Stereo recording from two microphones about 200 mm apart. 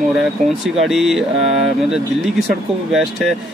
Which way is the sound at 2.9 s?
Centre (ahead or behind).